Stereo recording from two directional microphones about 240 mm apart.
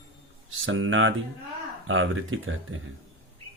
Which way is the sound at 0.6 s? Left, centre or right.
Right.